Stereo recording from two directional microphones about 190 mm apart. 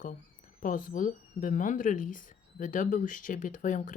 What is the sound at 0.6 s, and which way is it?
Speech, 45° left (ahead or behind).